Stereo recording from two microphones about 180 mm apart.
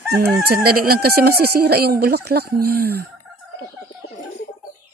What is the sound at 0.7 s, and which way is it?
Speech, 55° right (ahead or behind).